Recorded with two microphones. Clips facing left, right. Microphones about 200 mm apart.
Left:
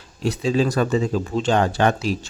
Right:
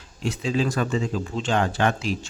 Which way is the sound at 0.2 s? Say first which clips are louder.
Left 4 dB; 35° left (ahead or behind).